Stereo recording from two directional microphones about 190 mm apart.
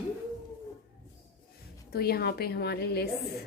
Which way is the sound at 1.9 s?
55° left (ahead or behind).